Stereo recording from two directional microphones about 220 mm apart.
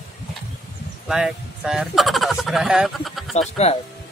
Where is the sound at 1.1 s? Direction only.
5° right (ahead or behind).